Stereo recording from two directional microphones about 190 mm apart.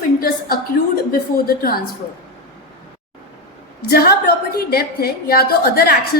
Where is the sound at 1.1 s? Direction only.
50° left (ahead or behind).